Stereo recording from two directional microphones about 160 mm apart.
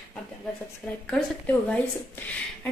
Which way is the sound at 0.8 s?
Centre (ahead or behind).